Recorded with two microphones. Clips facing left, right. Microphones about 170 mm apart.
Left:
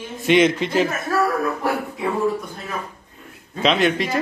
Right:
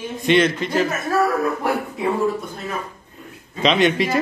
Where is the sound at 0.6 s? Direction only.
25° left (ahead or behind).